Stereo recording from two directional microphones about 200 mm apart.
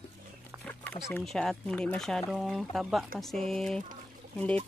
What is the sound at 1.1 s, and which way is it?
Speech, 5° left (ahead or behind).